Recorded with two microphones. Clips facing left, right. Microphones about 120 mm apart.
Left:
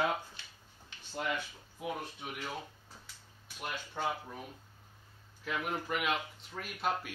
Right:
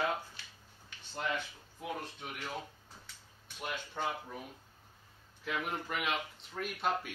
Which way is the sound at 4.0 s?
5° left (ahead or behind).